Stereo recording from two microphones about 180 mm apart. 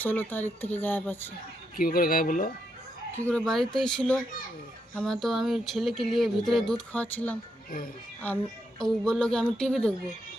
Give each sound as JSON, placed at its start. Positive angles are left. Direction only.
{"t": 0.0, "sound": "speech", "side_deg": 10}
{"t": 1.7, "sound": "speech", "side_deg": 50}
{"t": 3.2, "sound": "speech", "side_deg": 5}